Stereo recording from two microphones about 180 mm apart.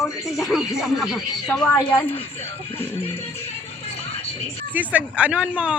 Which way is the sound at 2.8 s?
35° left (ahead or behind).